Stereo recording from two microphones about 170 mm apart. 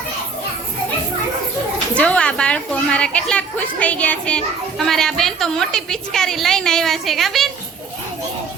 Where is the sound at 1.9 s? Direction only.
5° left (ahead or behind).